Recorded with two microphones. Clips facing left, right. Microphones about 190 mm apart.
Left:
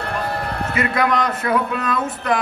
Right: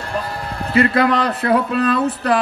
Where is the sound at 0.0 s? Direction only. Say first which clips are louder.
Left 1 dB; 60° left (ahead or behind).